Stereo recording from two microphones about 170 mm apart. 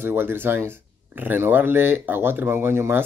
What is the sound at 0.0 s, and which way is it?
Speech, 10° right (ahead or behind).